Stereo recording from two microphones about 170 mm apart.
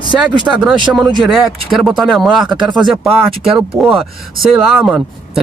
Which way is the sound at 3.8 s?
Centre (ahead or behind).